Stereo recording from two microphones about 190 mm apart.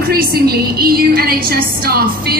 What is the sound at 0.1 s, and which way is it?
A woman's voice, 55° right (ahead or behind).